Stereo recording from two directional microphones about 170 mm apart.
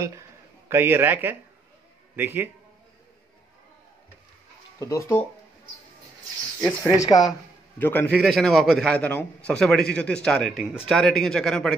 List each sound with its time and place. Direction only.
0.7 s a man's voice: 15° right (ahead or behind)
4.7 s speech: 15° left (ahead or behind)
6.8 s speech: 20° left (ahead or behind)
7.8 s speech: 10° left (ahead or behind)